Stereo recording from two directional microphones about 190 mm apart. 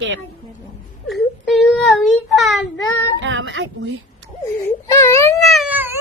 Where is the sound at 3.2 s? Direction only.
80° right.